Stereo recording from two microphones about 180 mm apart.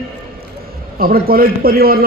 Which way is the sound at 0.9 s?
55° right (ahead or behind).